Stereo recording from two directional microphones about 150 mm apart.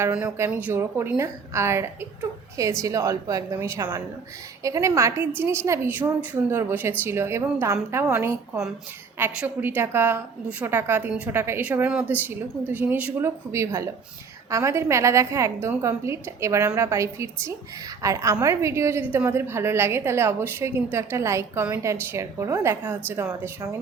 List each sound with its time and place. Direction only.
0.1 s a woman's voice: 10° right (ahead or behind)